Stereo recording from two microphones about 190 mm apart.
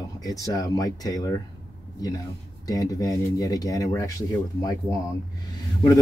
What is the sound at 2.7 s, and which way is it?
A man's voice, 20° left (ahead or behind).